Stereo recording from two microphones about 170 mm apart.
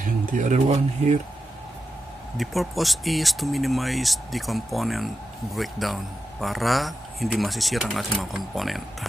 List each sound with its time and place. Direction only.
0.0 s speech: 50° right (ahead or behind)
2.3 s speech: centre (ahead or behind)